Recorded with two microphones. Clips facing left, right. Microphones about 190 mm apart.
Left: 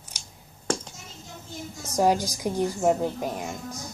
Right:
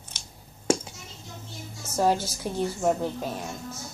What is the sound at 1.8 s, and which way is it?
Speech, 15° left (ahead or behind).